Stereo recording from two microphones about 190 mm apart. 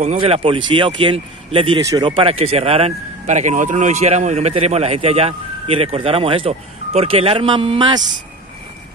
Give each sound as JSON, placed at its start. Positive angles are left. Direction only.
{"t": 0.2, "sound": "speech", "side_deg": -30}